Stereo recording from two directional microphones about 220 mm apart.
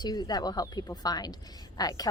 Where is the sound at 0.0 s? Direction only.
20° left (ahead or behind).